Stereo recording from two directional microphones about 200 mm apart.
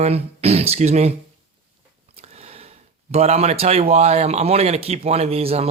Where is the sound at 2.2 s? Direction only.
30° right (ahead or behind).